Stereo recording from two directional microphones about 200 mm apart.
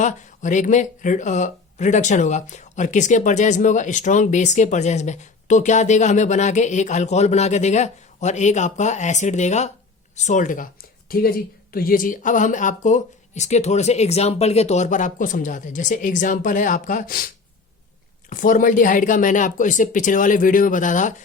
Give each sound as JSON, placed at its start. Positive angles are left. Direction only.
{"t": 0.0, "sound": "speech", "side_deg": 40}
{"t": 18.3, "sound": "speech", "side_deg": 40}